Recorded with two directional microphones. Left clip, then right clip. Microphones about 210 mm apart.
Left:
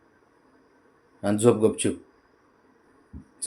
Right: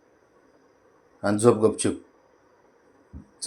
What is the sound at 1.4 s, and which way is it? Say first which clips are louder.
Speech: right 1 dB; 5° left (ahead or behind).